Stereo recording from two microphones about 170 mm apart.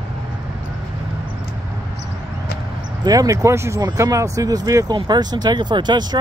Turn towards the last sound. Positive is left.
turn(degrees=-25)  # may be behind; listen again after turning